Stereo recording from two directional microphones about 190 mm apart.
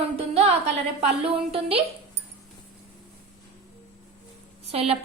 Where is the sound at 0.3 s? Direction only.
35° right (ahead or behind).